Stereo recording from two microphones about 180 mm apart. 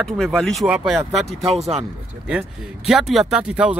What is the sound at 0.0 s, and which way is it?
Speech, centre (ahead or behind).